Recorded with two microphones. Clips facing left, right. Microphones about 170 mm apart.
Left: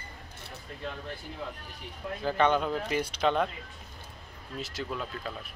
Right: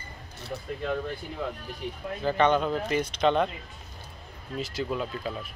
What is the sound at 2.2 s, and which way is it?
Speech, 5° left (ahead or behind).